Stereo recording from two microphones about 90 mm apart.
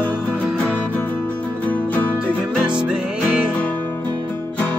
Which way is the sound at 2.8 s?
10° right (ahead or behind).